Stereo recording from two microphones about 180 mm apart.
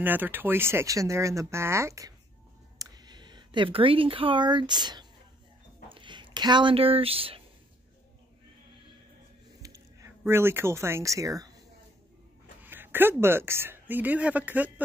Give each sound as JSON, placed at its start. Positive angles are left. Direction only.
{"t": 0.0, "sound": "speech", "side_deg": -10}
{"t": 9.6, "sound": "a sound", "side_deg": -20}
{"t": 12.6, "sound": "speech", "side_deg": -10}